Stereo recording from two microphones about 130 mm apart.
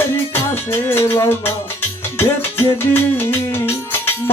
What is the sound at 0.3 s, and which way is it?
Music, 15° left (ahead or behind).